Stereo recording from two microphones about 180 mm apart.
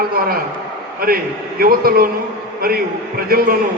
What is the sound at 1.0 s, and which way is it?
A man's voice, 55° right (ahead or behind).